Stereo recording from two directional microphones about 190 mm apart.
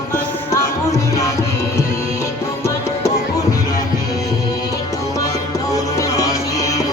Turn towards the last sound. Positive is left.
turn(degrees=20)  # may be behind; listen again after turning